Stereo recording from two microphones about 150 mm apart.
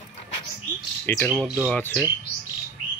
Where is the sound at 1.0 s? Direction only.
10° left (ahead or behind).